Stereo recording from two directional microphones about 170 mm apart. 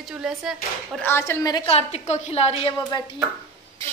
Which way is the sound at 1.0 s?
15° left (ahead or behind).